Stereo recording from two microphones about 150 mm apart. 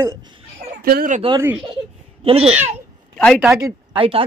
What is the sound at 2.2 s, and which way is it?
Speech, 40° right (ahead or behind).